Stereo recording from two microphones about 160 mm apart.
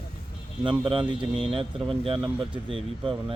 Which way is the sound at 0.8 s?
30° right (ahead or behind).